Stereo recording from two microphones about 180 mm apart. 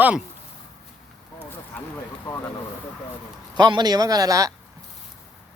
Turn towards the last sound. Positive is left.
turn(degrees=-20)  # may be behind; listen again after turning